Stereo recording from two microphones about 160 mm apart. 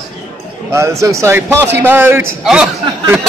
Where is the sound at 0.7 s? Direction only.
20° right (ahead or behind).